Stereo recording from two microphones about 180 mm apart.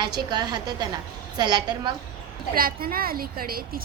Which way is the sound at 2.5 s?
55° right (ahead or behind).